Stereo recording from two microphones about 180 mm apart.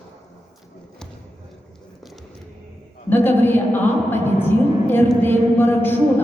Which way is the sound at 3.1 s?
10° left (ahead or behind).